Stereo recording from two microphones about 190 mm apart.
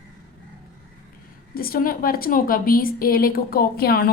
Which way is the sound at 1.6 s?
50° left (ahead or behind).